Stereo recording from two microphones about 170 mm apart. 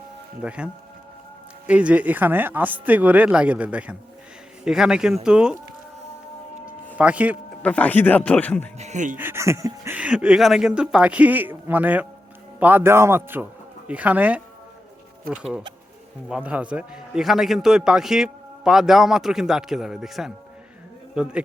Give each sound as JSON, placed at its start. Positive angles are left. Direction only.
{"t": 0.4, "sound": "a man's voice", "side_deg": -5}
{"t": 6.9, "sound": "speech", "side_deg": -10}
{"t": 7.6, "sound": "speech", "side_deg": 10}
{"t": 8.8, "sound": "speech", "side_deg": -45}
{"t": 9.1, "sound": "a man's voice", "side_deg": -15}